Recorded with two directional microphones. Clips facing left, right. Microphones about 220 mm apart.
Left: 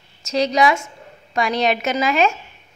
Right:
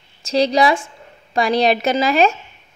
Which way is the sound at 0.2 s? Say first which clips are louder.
Right 2 dB; 30° right (ahead or behind).